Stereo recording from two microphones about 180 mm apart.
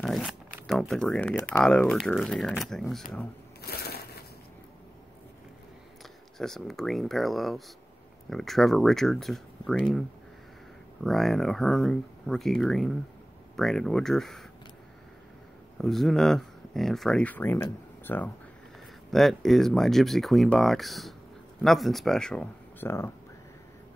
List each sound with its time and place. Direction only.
0.0 s speech: centre (ahead or behind)
3.6 s crushing: 60° left (ahead or behind)
6.3 s speech: centre (ahead or behind)
11.1 s speech: centre (ahead or behind)
15.8 s speech: centre (ahead or behind)